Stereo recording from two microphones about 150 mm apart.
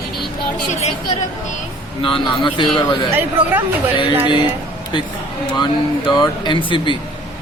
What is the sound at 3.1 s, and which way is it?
Speech, 15° right (ahead or behind).